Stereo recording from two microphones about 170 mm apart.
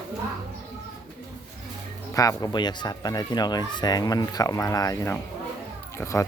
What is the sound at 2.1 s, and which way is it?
Speech, 20° left (ahead or behind).